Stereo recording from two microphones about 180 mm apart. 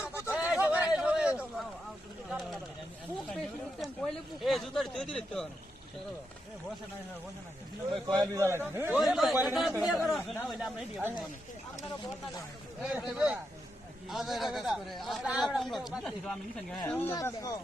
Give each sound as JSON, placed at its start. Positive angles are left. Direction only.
{"t": 0.2, "sound": "a sound", "side_deg": -10}
{"t": 4.4, "sound": "a man's voice", "side_deg": 0}
{"t": 7.9, "sound": "a man's voice", "side_deg": -25}
{"t": 9.0, "sound": "a man's voice", "side_deg": 0}
{"t": 12.8, "sound": "a man's voice", "side_deg": -5}
{"t": 16.9, "sound": "speech", "side_deg": 15}